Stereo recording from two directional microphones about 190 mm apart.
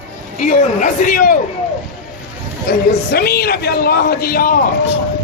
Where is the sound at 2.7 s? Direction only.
55° left (ahead or behind).